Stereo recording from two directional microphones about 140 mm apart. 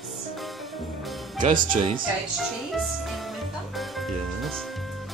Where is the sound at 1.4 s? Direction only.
60° right (ahead or behind).